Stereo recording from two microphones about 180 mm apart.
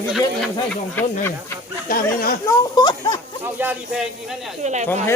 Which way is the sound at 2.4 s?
20° left (ahead or behind).